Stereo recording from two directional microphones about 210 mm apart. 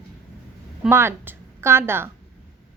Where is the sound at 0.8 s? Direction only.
10° right (ahead or behind).